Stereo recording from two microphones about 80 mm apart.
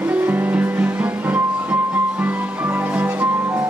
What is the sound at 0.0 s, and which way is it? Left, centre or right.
Music, right.